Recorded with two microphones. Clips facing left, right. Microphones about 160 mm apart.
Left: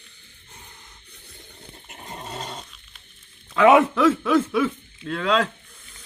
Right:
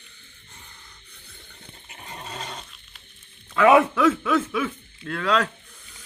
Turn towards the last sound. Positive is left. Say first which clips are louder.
# left 1 dB
turn(degrees=10)  # may be behind; listen again after turning